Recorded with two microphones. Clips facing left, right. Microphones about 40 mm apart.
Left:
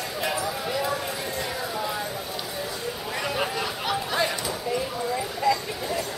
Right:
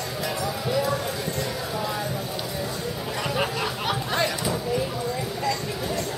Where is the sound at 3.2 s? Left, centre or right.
Centre.